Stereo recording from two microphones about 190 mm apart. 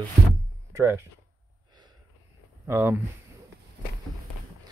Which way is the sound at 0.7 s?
10° right (ahead or behind).